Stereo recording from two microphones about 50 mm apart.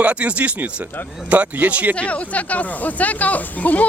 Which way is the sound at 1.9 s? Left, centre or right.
Left.